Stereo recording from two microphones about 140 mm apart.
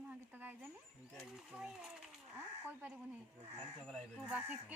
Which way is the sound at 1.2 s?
5° right (ahead or behind).